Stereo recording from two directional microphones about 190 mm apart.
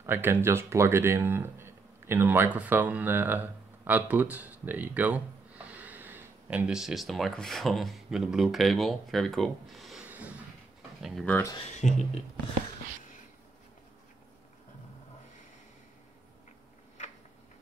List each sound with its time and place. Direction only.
0.0 s speech: 10° right (ahead or behind); by 11.5 s 10° left (ahead or behind)
11.6 s speech: 40° left (ahead or behind)